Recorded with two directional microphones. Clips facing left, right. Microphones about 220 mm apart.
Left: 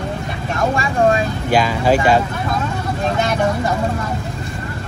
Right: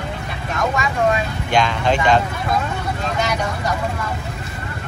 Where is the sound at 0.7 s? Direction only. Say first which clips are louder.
Left 4 dB; 30° left (ahead or behind).